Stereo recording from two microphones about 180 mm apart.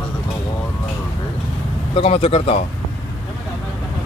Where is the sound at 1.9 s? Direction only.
35° left (ahead or behind).